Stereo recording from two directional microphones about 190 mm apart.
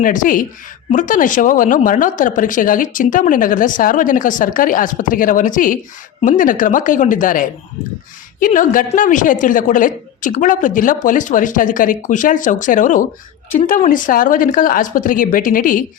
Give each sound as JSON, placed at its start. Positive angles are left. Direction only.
{"t": 0.0, "sound": "speech", "side_deg": 45}